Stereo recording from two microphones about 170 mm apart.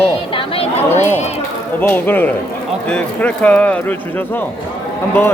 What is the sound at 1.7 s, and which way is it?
Speech, 10° left (ahead or behind).